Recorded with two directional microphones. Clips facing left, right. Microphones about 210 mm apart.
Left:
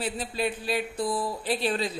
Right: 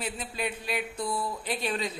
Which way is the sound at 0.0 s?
35° left (ahead or behind).